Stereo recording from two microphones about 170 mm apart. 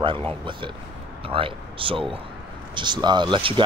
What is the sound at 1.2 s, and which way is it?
Speech, 30° right (ahead or behind).